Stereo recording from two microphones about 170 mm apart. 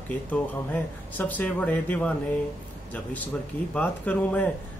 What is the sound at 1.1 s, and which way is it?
Speech, 10° left (ahead or behind).